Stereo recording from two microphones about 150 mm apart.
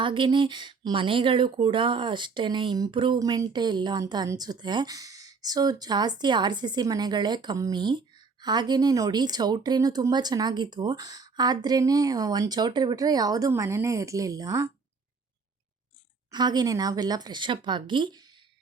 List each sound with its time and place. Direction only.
0.0 s speech: 35° right (ahead or behind)
16.3 s speech: 30° right (ahead or behind)